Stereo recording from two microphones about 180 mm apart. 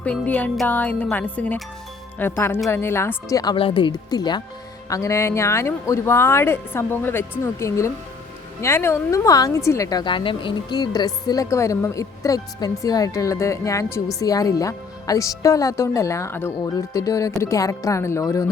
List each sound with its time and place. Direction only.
0.0 s speech: 10° left (ahead or behind)